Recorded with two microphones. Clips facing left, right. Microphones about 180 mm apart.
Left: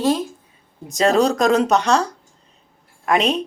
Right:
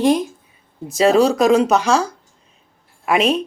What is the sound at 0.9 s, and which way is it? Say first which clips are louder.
Speech: right 3 dB; 5° right (ahead or behind).